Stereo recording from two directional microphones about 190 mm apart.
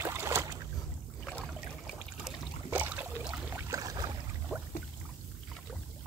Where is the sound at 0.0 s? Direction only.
15° right (ahead or behind).